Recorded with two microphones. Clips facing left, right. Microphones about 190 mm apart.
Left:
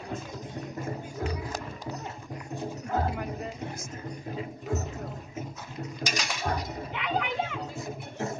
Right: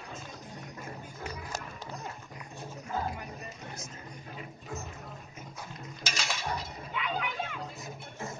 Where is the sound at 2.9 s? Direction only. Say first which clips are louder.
Left 5 dB; 60° left (ahead or behind).